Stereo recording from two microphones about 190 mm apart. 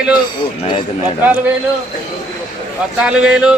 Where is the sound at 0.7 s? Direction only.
25° left (ahead or behind).